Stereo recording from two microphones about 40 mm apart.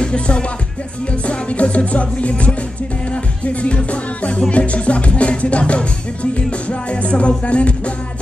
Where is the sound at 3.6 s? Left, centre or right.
Left.